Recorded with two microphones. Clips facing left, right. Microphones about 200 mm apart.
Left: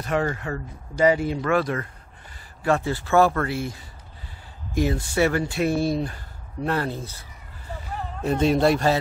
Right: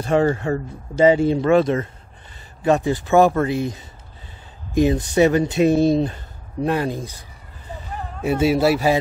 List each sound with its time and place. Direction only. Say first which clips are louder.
0.0 s speech: right 7 dB; 30° right (ahead or behind); by 8.9 s 5° right (ahead or behind)